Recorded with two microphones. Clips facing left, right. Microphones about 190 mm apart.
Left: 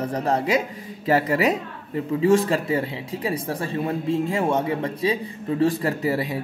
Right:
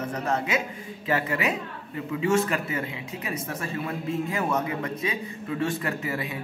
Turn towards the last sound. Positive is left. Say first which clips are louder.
# left 7 dB
turn(degrees=35)  # may be behind; listen again after turning